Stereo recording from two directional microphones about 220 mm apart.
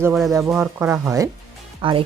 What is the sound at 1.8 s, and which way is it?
Speech, 25° right (ahead or behind).